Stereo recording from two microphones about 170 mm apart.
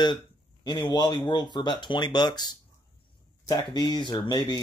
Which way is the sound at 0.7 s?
25° left (ahead or behind).